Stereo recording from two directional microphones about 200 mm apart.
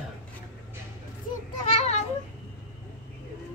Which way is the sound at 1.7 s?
35° left (ahead or behind).